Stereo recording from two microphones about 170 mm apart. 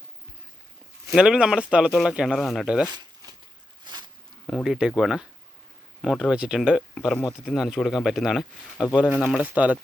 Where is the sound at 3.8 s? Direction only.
25° right (ahead or behind).